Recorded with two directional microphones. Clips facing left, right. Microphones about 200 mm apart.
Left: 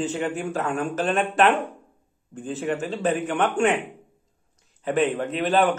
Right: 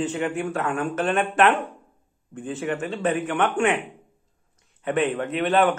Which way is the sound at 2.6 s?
35° left (ahead or behind).